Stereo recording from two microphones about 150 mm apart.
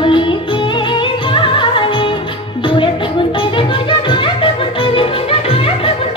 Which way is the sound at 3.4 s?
35° left (ahead or behind).